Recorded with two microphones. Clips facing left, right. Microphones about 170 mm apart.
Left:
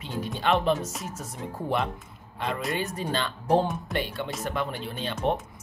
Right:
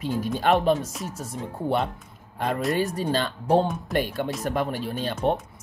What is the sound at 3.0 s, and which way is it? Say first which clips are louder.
Speech: right 4 dB; 35° right (ahead or behind).